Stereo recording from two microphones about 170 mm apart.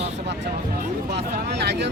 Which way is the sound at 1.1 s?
85° right.